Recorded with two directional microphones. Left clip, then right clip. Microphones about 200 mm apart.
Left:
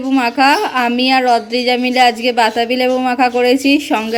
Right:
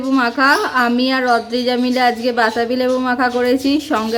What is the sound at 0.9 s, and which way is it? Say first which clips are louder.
Speech: left 4 dB; 25° right (ahead or behind).